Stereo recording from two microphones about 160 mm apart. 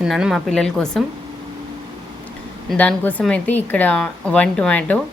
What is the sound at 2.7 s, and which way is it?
A woman's voice, 10° left (ahead or behind).